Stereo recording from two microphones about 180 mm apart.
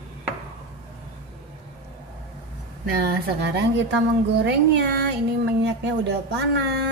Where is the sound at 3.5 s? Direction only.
75° right (ahead or behind).